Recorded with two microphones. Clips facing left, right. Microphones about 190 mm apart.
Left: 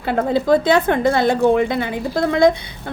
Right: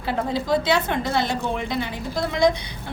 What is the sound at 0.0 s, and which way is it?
A woman's voice, 55° left (ahead or behind).